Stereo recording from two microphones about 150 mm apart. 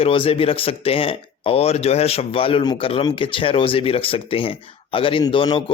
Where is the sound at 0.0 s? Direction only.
40° left (ahead or behind).